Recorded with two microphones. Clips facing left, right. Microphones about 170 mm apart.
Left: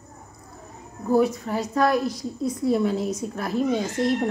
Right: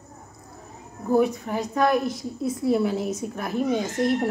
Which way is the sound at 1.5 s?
20° right (ahead or behind).